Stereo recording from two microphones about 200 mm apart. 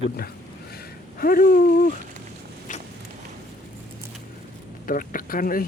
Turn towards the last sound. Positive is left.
turn(degrees=45)  # may be behind; listen again after turning